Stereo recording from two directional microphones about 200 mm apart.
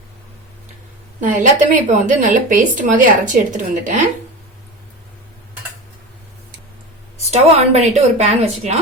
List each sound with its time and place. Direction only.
1.2 s speech: 40° right (ahead or behind)
7.3 s speech: 35° right (ahead or behind)